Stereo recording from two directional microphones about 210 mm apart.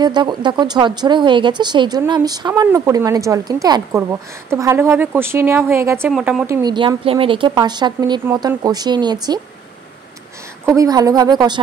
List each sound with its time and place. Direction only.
0.0 s a woman's voice: 20° right (ahead or behind)
6.1 s a woman's voice: centre (ahead or behind)
6.4 s speech: 15° right (ahead or behind)
10.7 s speech: 15° right (ahead or behind)